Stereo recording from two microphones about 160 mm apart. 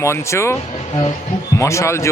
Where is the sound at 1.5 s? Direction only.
20° left (ahead or behind).